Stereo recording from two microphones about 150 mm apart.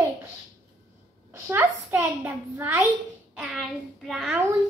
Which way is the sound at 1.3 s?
15° right (ahead or behind).